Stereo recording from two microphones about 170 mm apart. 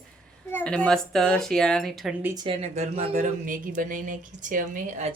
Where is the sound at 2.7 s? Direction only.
45° right (ahead or behind).